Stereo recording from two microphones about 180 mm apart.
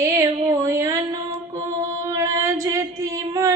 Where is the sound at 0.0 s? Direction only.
15° right (ahead or behind).